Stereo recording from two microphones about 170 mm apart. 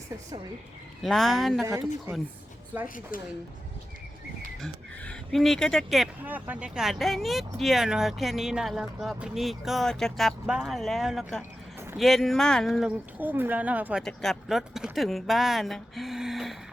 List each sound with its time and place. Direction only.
1.0 s speech: centre (ahead or behind)
2.1 s a woman's voice: 15° right (ahead or behind)
2.8 s speech: 55° left (ahead or behind)
4.6 s speech: centre (ahead or behind)
14.0 s speech: 5° left (ahead or behind)